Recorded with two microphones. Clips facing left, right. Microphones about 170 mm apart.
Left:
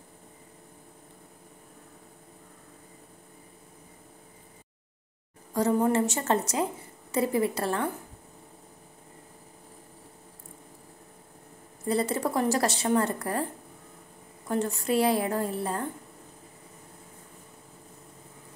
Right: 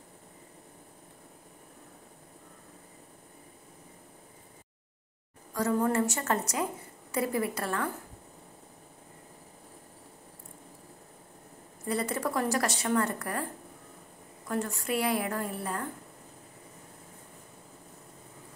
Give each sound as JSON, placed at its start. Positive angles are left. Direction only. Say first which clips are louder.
{"t": 5.5, "sound": "a woman's voice", "louder": "left 4 dB", "side_deg": 25}
{"t": 11.9, "sound": "a woman's voice", "louder": "left 4 dB", "side_deg": 30}
{"t": 14.5, "sound": "a woman's voice", "louder": "left 4 dB", "side_deg": 25}